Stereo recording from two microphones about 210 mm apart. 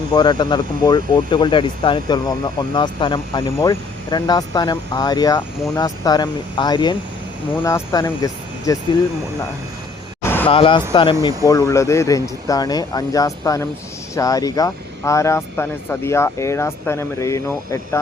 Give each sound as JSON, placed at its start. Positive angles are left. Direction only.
{"t": 0.1, "sound": "speech", "side_deg": 20}
{"t": 7.5, "sound": "speech", "side_deg": 10}
{"t": 10.2, "sound": "vehicle", "side_deg": 10}
{"t": 10.5, "sound": "speech", "side_deg": 25}